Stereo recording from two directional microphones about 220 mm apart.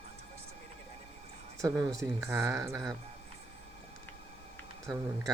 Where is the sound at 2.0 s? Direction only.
15° right (ahead or behind).